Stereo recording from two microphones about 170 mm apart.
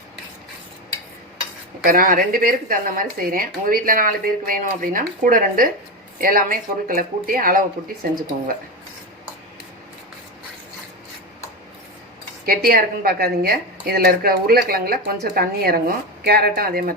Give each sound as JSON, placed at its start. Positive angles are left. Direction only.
{"t": 1.8, "sound": "speech", "side_deg": -55}
{"t": 12.5, "sound": "speech", "side_deg": -60}